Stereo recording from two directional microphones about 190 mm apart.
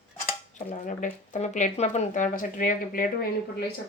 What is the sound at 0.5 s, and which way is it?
Speech, 45° left (ahead or behind).